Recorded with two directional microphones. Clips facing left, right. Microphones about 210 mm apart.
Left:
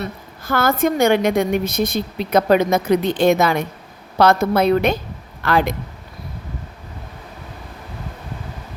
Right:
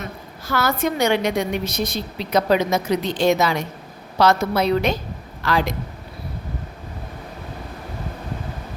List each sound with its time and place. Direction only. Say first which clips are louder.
0.4 s a woman's voice: left 4 dB; 50° left (ahead or behind)